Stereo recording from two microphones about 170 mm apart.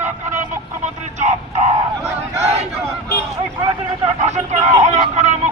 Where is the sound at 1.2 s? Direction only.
45° right (ahead or behind).